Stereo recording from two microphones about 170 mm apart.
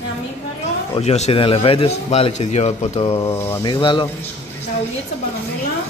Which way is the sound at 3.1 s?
15° left (ahead or behind).